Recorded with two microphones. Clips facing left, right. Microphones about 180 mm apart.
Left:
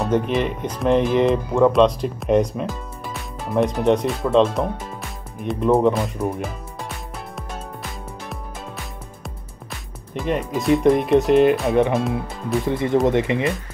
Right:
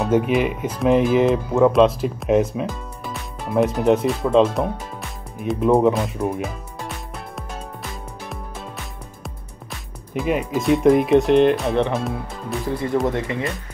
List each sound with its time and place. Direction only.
0.0 s speech: 5° right (ahead or behind)
5.4 s music: centre (ahead or behind)
11.7 s speech: 15° left (ahead or behind)